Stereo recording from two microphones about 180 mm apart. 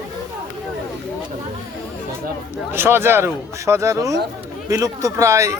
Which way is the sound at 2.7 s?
10° right (ahead or behind).